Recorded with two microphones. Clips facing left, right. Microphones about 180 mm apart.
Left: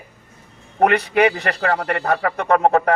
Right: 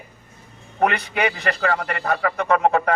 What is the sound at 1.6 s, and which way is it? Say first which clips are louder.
Speech: left 2 dB; 35° left (ahead or behind).